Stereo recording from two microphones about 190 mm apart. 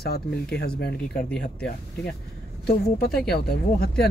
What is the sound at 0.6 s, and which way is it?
Speech, 60° left (ahead or behind).